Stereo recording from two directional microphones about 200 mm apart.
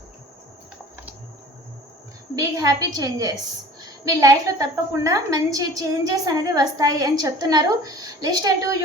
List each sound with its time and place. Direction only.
2.3 s a woman's voice: 15° right (ahead or behind)